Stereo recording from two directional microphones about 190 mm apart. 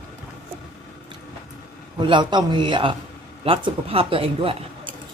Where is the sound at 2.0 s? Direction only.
25° right (ahead or behind).